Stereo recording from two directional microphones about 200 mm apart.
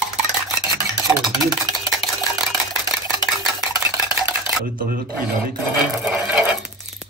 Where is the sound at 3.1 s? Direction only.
15° right (ahead or behind).